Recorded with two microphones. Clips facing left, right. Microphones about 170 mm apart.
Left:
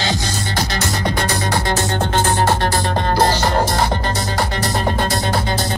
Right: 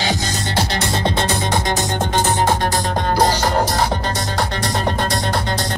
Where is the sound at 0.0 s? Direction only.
15° right (ahead or behind).